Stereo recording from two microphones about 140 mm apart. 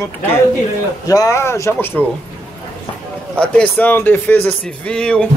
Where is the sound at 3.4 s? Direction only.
10° left (ahead or behind).